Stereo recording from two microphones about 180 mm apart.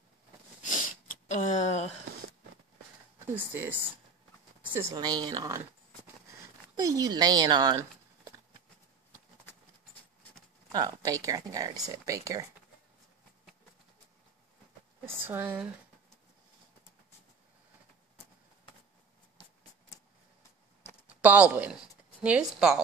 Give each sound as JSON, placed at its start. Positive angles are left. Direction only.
{"t": 0.6, "sound": "sniff", "side_deg": 45}
{"t": 3.3, "sound": "speech", "side_deg": -10}
{"t": 6.8, "sound": "speech", "side_deg": -20}
{"t": 10.7, "sound": "speech", "side_deg": -20}
{"t": 15.0, "sound": "speech", "side_deg": -15}
{"t": 21.2, "sound": "speech", "side_deg": -10}